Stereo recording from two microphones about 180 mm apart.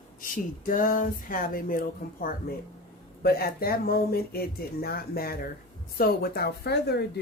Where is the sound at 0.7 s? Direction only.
45° left (ahead or behind).